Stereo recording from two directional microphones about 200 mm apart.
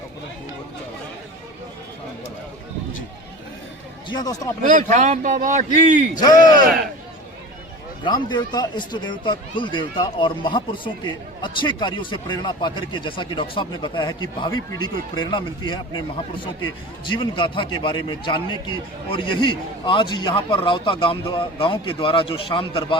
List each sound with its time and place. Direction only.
4.1 s a man's voice: 20° left (ahead or behind)
4.7 s speech: 40° right (ahead or behind)
6.1 s speech: 20° left (ahead or behind)
8.0 s speech: 20° left (ahead or behind)